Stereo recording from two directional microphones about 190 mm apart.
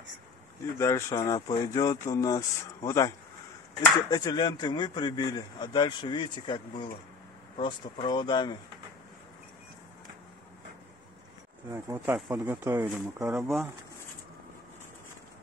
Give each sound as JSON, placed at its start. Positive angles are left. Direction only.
{"t": 0.7, "sound": "speech", "side_deg": 15}
{"t": 4.1, "sound": "speech", "side_deg": 20}
{"t": 11.7, "sound": "speech", "side_deg": -15}